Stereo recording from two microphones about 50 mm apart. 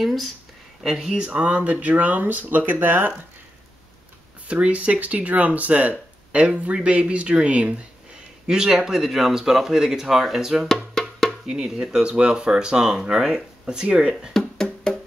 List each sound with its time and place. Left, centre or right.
0.0 s speech: centre
0.8 s speech: centre; by 3.1 s right
4.5 s speech: right; by 10.7 s centre
11.0 s music: centre
11.4 s speech: centre
14.3 s music: centre